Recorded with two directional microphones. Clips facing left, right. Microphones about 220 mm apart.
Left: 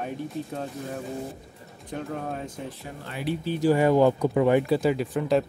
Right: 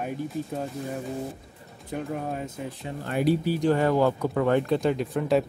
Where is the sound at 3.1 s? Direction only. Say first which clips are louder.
Right 7 dB; 50° right (ahead or behind).